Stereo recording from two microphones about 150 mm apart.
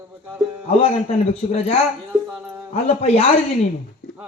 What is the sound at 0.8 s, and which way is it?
Speech, 40° left (ahead or behind).